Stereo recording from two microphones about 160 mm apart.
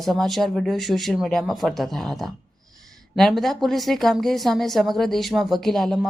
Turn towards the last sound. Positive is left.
turn(degrees=0)  # may be behind; listen again after turning